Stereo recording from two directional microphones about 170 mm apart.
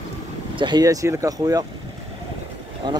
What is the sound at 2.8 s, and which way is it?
Speech, 25° right (ahead or behind).